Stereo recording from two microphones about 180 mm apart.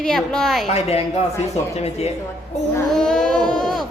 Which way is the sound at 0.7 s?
35° left (ahead or behind).